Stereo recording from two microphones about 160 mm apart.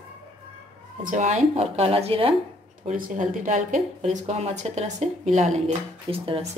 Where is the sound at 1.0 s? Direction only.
50° right (ahead or behind).